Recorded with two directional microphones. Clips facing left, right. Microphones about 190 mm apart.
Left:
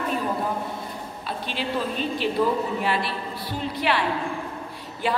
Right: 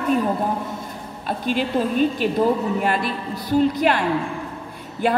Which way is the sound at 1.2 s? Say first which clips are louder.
Right 7 dB; 50° right (ahead or behind).